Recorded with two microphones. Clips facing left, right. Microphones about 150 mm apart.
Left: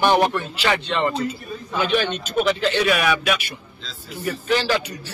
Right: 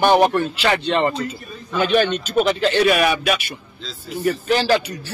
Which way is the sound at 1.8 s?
50° right (ahead or behind).